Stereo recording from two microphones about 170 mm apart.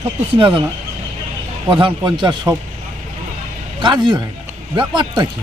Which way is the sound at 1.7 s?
25° right (ahead or behind).